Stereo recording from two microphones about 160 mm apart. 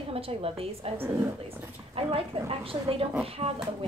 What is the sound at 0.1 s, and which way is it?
Speech, 35° right (ahead or behind).